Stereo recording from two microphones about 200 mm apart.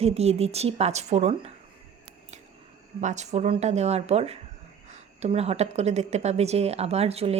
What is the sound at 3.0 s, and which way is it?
Speech, 35° right (ahead or behind).